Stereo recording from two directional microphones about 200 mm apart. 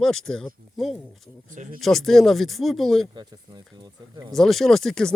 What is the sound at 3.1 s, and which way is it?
Speech, 20° right (ahead or behind).